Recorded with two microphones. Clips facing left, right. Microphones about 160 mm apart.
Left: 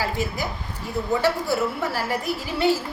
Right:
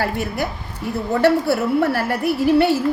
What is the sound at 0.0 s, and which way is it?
A woman's voice, 65° right (ahead or behind).